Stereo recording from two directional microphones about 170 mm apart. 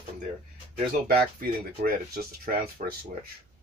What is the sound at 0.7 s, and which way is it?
Speech, 55° right (ahead or behind).